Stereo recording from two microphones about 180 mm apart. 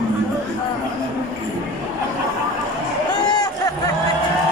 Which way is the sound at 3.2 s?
20° left (ahead or behind).